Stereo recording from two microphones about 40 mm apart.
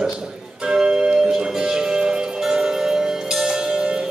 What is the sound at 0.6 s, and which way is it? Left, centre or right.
Music, centre.